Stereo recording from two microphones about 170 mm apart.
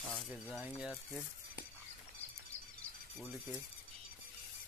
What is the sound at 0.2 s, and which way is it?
Speech, centre (ahead or behind).